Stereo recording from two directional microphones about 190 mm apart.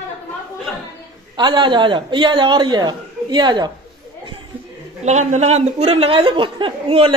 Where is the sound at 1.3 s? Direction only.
25° right (ahead or behind).